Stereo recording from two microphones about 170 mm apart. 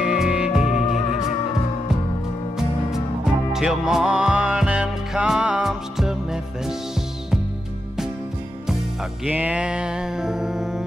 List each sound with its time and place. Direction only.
0.0 s music: 5° right (ahead or behind)
0.8 s music: 35° left (ahead or behind)
3.5 s music: 5° right (ahead or behind)
9.2 s music: 10° right (ahead or behind)